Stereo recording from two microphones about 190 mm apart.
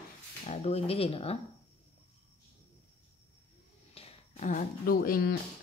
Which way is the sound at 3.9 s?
40° left (ahead or behind).